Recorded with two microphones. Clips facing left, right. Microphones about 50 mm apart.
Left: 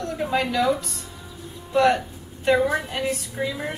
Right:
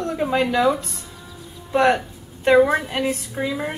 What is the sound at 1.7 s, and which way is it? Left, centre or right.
A woman's voice, right.